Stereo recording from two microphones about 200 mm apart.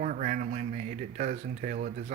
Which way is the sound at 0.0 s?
40° right (ahead or behind).